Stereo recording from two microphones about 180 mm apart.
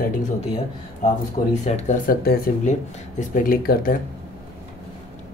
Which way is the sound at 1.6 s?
40° left (ahead or behind).